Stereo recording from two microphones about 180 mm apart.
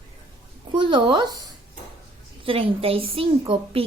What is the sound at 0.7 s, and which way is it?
Speech, 25° right (ahead or behind).